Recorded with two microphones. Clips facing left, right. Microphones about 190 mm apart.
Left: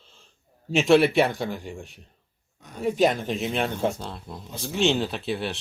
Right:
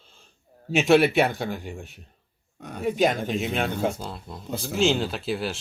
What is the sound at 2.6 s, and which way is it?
Speech, 65° right (ahead or behind).